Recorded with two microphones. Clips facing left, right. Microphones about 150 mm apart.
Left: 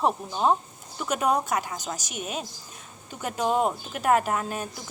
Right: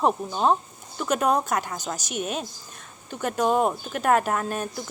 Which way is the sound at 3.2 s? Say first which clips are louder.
Right 3 dB; 10° left (ahead or behind).